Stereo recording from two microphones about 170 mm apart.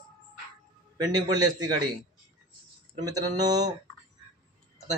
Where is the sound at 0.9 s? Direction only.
25° right (ahead or behind).